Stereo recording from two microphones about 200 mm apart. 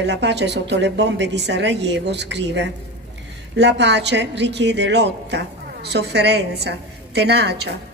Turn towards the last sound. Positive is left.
turn(degrees=-55)  # may be behind; listen again after turning